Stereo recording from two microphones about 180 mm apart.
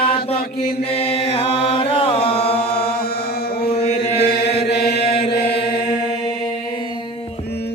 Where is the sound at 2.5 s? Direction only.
60° left (ahead or behind).